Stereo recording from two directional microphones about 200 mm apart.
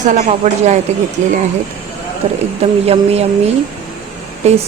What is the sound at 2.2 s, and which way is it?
A woman's voice, 30° right (ahead or behind).